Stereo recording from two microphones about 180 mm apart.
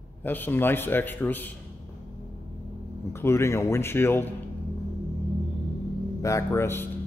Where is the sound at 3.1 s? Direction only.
15° left (ahead or behind).